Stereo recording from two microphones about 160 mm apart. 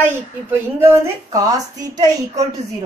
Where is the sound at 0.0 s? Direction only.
15° right (ahead or behind).